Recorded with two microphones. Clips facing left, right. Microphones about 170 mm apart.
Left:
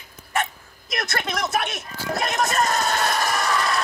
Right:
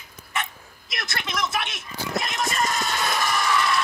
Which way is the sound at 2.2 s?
45° left (ahead or behind).